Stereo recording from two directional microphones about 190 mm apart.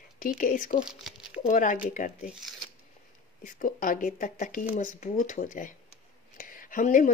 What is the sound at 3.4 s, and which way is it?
Speech, 45° left (ahead or behind).